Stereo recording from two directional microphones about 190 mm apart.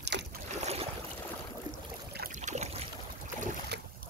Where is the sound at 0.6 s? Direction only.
35° right (ahead or behind).